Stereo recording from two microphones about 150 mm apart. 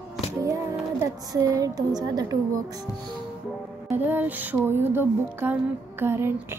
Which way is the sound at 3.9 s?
15° right (ahead or behind).